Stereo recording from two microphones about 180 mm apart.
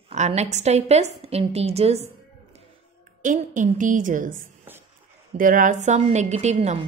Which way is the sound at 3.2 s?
45° right (ahead or behind).